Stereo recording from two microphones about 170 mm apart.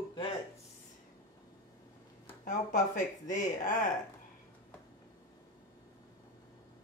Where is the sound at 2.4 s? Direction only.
50° left (ahead or behind).